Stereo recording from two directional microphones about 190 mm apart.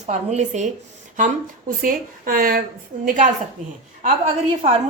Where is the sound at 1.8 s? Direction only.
45° right (ahead or behind).